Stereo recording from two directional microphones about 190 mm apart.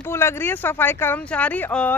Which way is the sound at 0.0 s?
15° left (ahead or behind).